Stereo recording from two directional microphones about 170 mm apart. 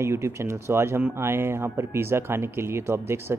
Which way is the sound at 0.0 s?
15° right (ahead or behind).